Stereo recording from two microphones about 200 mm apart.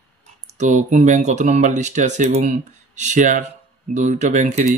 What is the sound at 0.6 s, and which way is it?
Speech, 35° right (ahead or behind).